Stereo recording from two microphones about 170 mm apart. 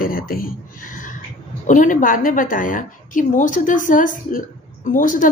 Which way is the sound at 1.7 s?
50° left (ahead or behind).